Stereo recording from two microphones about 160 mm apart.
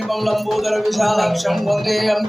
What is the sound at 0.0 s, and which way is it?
Music, centre (ahead or behind).